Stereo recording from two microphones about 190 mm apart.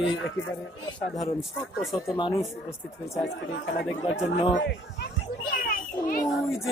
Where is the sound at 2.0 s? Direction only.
25° left (ahead or behind).